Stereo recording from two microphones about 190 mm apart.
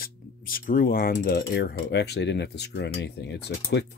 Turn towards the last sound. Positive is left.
turn(degrees=60)  # may be behind; listen again after turning